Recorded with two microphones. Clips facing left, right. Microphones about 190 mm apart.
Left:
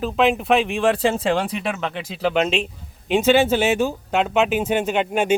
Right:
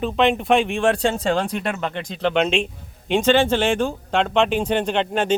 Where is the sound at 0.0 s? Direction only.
Centre (ahead or behind).